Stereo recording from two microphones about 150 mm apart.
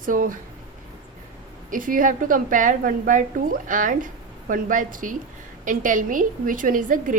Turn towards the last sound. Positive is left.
turn(degrees=-65)  # may be behind; listen again after turning